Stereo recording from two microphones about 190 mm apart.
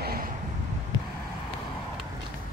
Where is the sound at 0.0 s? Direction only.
50° right (ahead or behind).